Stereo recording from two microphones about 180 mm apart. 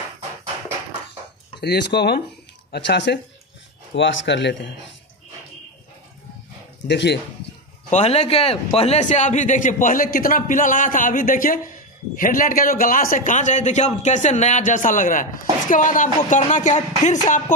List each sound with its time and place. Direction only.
1.6 s speech: 65° left (ahead or behind)
3.9 s speech: 90° left
6.9 s speech: 70° left (ahead or behind)
7.9 s a man's voice: 35° left (ahead or behind)